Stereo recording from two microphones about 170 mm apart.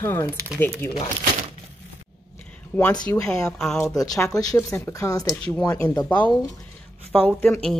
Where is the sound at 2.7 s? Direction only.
10° left (ahead or behind).